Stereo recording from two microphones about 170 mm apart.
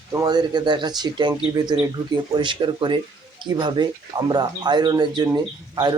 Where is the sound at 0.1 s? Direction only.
25° right (ahead or behind).